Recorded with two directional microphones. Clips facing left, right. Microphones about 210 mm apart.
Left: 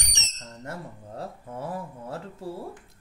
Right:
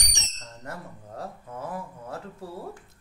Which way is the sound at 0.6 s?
30° left (ahead or behind).